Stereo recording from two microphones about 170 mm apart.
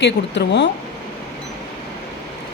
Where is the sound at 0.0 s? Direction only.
90° left.